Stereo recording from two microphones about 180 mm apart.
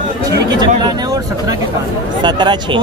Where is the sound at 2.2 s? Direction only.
25° right (ahead or behind).